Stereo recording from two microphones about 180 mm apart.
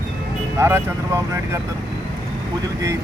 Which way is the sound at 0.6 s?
15° right (ahead or behind).